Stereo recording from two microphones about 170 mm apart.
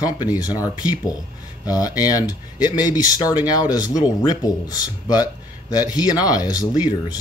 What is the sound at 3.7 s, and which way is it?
Speech, 20° left (ahead or behind).